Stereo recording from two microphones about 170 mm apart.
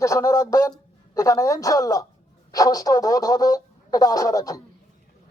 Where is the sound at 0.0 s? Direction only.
20° left (ahead or behind).